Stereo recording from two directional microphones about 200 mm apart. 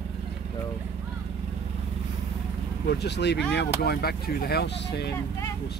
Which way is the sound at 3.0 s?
60° left (ahead or behind).